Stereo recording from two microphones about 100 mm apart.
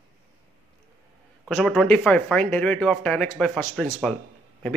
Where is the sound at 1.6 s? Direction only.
Centre (ahead or behind).